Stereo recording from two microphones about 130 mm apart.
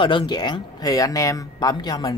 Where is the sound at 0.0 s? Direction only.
40° left (ahead or behind).